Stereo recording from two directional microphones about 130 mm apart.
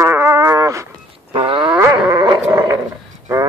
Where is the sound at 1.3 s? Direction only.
45° right (ahead or behind).